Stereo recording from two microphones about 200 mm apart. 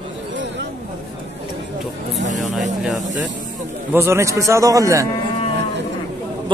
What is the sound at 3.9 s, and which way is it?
Speech, 15° right (ahead or behind).